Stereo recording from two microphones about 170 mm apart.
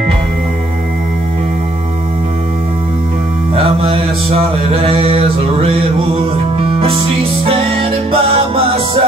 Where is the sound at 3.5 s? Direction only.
35° right (ahead or behind).